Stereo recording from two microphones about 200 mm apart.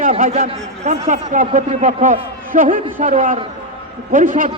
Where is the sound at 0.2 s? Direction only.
45° right (ahead or behind).